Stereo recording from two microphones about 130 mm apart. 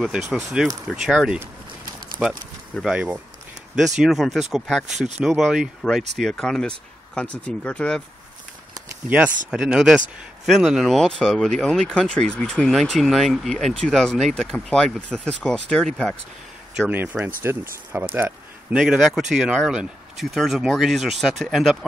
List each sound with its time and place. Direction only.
0.1 s speech: 5° right (ahead or behind)
2.8 s speech: 10° right (ahead or behind); by 8.0 s 10° left (ahead or behind)
9.5 s speech: 5° right (ahead or behind)
16.8 s speech: 15° right (ahead or behind); by 21.7 s centre (ahead or behind)